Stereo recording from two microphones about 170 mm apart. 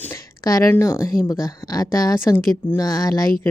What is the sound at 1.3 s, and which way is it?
A woman's voice, 20° left (ahead or behind).